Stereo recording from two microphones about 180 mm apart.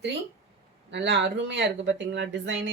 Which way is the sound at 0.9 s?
75° right (ahead or behind).